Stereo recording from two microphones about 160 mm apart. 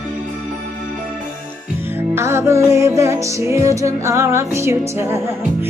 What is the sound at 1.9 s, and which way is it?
Music, 15° right (ahead or behind).